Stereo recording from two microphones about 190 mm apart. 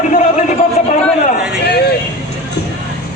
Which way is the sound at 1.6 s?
60° left (ahead or behind).